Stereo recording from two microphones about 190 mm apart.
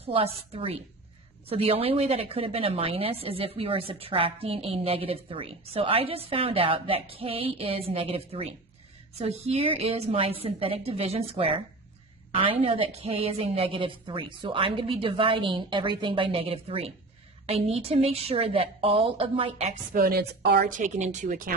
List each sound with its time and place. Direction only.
0.0 s a woman's voice: 30° right (ahead or behind)